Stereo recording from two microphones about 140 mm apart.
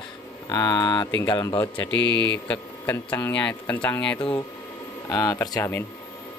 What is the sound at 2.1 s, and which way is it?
Speech, 35° right (ahead or behind).